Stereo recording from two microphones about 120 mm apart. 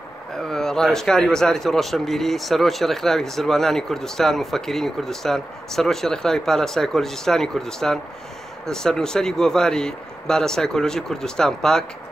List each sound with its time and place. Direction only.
0.4 s speech: 5° left (ahead or behind)